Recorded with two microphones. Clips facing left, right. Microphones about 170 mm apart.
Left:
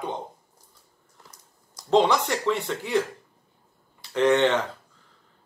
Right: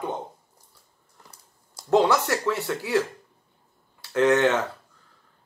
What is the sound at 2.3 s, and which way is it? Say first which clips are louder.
Speech: even; 5° right (ahead or behind).